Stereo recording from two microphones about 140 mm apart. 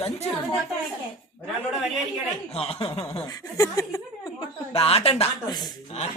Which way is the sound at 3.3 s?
25° left (ahead or behind).